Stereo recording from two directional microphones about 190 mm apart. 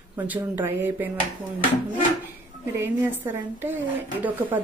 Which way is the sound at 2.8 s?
10° right (ahead or behind).